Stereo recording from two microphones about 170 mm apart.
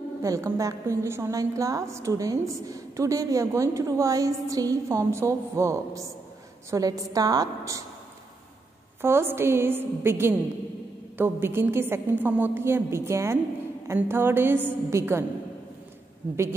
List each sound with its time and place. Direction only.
0.2 s a woman's voice: 20° right (ahead or behind)
9.0 s a woman's voice: 15° right (ahead or behind)